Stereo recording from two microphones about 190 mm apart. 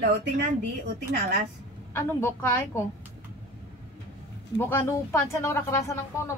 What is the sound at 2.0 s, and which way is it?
Speech, 10° left (ahead or behind).